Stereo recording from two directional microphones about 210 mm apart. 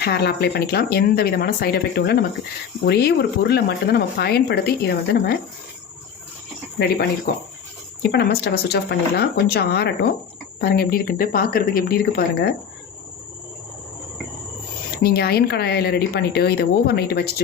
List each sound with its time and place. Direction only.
0.0 s speech: 50° left (ahead or behind)
6.7 s speech: 50° left (ahead or behind)
8.1 s speech: 50° left (ahead or behind)
15.0 s speech: 50° left (ahead or behind)